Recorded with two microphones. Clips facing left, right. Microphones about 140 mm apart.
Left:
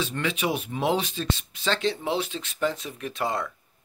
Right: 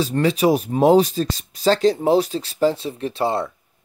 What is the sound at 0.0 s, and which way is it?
Speech, 40° right (ahead or behind).